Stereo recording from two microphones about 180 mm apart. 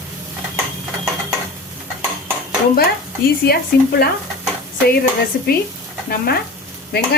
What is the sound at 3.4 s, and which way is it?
Speech, 60° left (ahead or behind).